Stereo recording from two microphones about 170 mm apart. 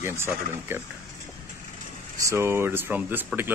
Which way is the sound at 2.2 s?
15° right (ahead or behind).